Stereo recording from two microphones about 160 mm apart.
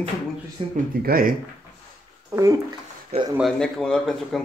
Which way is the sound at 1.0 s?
65° right (ahead or behind).